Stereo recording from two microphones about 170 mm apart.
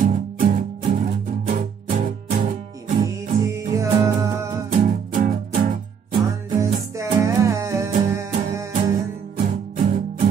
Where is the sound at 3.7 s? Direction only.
15° right (ahead or behind).